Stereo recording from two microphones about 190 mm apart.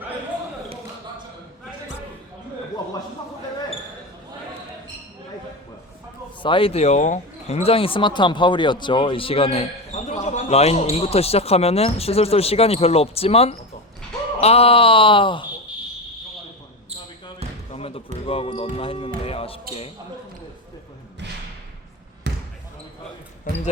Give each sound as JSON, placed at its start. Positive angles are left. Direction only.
{"t": 6.4, "sound": "speech", "side_deg": 25}
{"t": 17.7, "sound": "basketball bounce", "side_deg": 30}
{"t": 18.3, "sound": "speech", "side_deg": 30}
{"t": 22.3, "sound": "basketball bounce", "side_deg": -65}